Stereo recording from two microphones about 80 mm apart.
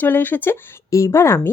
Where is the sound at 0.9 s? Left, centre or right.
Left.